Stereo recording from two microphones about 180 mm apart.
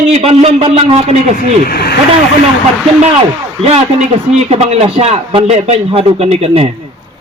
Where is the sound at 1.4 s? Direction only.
60° left (ahead or behind).